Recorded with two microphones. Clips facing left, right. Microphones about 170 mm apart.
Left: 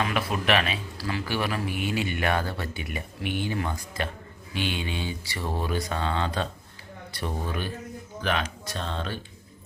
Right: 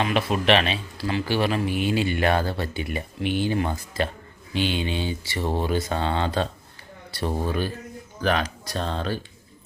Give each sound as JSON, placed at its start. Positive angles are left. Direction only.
{"t": 0.0, "sound": "speech", "side_deg": -25}